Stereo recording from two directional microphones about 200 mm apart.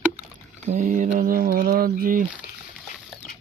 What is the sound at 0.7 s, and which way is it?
Speech, 45° right (ahead or behind).